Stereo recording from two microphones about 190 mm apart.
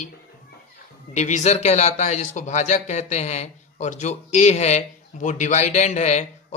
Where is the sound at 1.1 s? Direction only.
35° left (ahead or behind).